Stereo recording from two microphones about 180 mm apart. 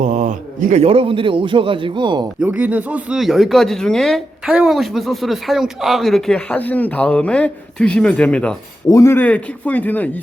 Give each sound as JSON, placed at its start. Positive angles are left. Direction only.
{"t": 0.0, "sound": "a man's voice", "side_deg": -40}
{"t": 2.4, "sound": "speech", "side_deg": -10}
{"t": 8.9, "sound": "speech", "side_deg": 15}